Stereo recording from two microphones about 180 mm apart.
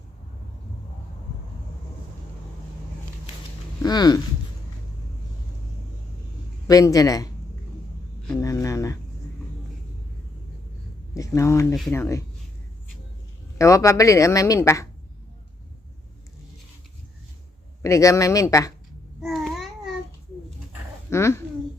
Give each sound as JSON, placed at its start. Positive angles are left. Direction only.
{"t": 3.8, "sound": "speech", "side_deg": 20}
{"t": 6.7, "sound": "speech", "side_deg": 20}
{"t": 8.4, "sound": "speech", "side_deg": 20}
{"t": 11.1, "sound": "speech", "side_deg": 20}
{"t": 13.6, "sound": "speech", "side_deg": 15}
{"t": 17.8, "sound": "speech", "side_deg": 15}
{"t": 19.2, "sound": "babbling", "side_deg": 0}
{"t": 21.1, "sound": "speech", "side_deg": 15}